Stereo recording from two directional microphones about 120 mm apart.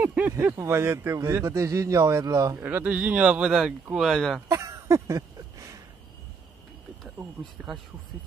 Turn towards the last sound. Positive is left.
turn(degrees=-5)  # may be behind; listen again after turning